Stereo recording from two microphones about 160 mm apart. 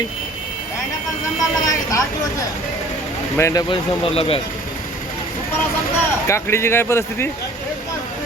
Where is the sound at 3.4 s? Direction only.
15° left (ahead or behind).